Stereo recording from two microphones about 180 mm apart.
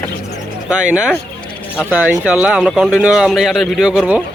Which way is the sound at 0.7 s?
5° right (ahead or behind).